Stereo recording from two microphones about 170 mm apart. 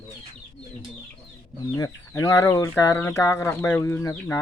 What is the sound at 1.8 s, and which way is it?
Speech, 20° left (ahead or behind).